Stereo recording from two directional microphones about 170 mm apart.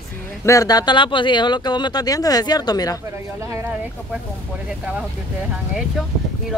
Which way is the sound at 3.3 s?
15° right (ahead or behind).